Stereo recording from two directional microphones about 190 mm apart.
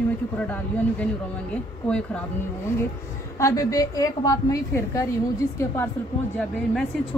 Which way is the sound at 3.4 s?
15° left (ahead or behind).